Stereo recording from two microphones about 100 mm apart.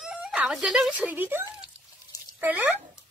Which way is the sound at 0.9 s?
15° right (ahead or behind).